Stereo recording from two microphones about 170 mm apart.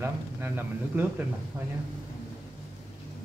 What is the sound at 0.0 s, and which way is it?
Speech, 10° right (ahead or behind).